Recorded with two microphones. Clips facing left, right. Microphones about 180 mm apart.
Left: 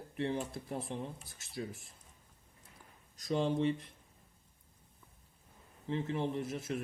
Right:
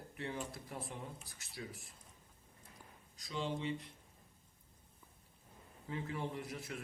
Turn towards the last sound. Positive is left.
turn(degrees=25)  # may be behind; listen again after turning